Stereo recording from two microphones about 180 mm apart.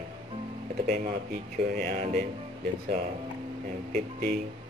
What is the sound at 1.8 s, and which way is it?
Speech, 40° right (ahead or behind).